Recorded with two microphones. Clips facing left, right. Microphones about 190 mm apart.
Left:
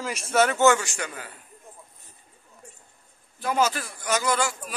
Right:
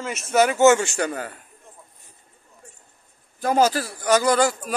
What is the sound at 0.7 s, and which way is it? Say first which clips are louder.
Speech: right 8 dB; 35° right (ahead or behind).